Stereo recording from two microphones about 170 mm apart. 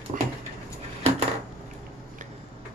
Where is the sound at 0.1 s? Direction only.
50° right (ahead or behind).